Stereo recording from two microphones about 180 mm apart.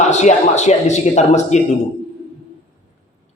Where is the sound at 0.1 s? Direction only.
40° left (ahead or behind).